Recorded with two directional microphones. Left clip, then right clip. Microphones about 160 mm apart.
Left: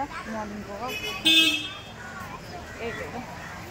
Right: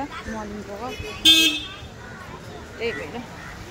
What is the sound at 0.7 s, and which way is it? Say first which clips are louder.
Speech: left 3 dB; 15° right (ahead or behind).